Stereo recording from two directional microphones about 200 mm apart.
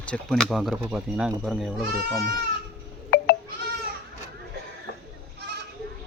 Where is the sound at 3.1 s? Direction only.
50° left (ahead or behind).